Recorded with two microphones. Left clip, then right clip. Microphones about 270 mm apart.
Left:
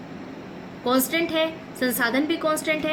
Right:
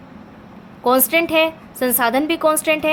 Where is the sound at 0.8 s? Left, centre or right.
Right.